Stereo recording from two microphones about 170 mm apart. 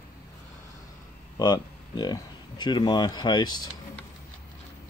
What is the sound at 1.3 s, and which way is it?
Speech, 25° left (ahead or behind).